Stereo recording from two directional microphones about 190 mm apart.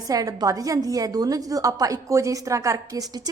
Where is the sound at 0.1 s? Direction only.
20° right (ahead or behind).